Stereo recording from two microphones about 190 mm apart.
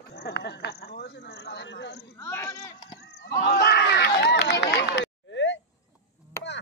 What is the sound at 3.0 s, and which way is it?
Crowd, 60° left (ahead or behind).